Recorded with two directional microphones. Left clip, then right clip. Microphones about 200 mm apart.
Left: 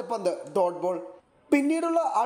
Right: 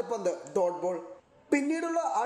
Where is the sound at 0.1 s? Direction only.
25° left (ahead or behind).